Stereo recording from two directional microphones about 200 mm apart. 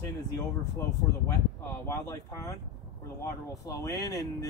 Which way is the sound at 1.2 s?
15° left (ahead or behind).